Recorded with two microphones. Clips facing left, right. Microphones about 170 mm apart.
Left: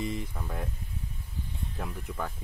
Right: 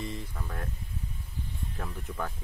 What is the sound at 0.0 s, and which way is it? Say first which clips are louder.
Speech: left 4 dB; 15° left (ahead or behind).